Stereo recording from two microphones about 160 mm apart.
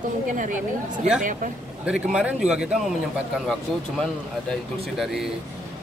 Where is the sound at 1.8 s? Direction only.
5° right (ahead or behind).